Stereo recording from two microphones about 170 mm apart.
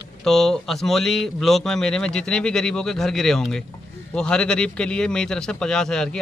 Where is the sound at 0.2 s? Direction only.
Centre (ahead or behind).